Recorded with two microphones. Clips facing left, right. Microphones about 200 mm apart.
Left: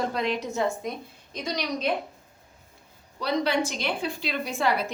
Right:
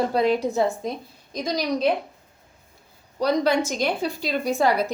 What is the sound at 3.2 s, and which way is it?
A woman's voice, 45° right (ahead or behind).